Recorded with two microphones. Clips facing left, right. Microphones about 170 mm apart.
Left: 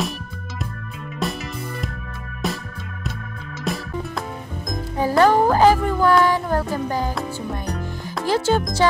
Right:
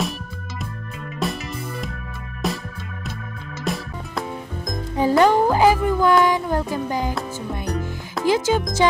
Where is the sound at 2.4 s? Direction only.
Centre (ahead or behind).